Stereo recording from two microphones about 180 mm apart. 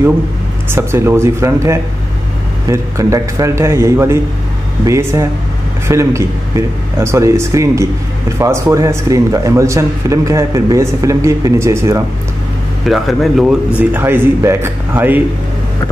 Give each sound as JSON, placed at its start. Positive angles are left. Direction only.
{"t": 0.7, "sound": "a man's voice", "side_deg": -15}
{"t": 12.8, "sound": "a man's voice", "side_deg": 0}